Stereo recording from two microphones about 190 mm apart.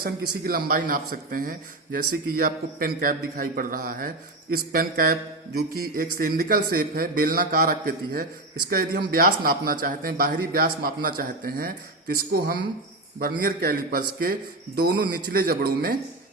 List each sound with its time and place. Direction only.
0.0 s a man's voice: 50° right (ahead or behind)